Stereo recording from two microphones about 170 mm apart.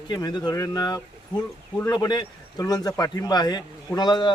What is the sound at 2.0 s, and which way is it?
Speech, 25° left (ahead or behind).